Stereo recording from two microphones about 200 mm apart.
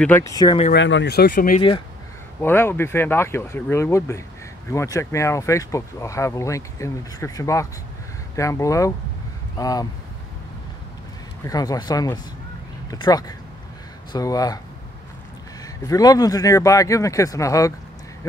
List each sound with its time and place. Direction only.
0.0 s speech: 15° left (ahead or behind)
0.7 s speech: 65° left (ahead or behind); by 1.6 s 45° left (ahead or behind)
2.4 s speech: 10° left (ahead or behind)
11.4 s speech: 20° left (ahead or behind)
15.6 s speech: 20° left (ahead or behind)